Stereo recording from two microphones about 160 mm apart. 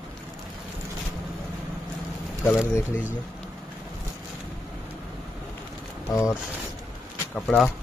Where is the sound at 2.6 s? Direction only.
10° right (ahead or behind).